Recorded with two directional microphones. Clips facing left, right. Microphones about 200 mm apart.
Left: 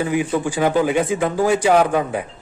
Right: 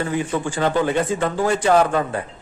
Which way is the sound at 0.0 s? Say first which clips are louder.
Left 3 dB; 10° left (ahead or behind).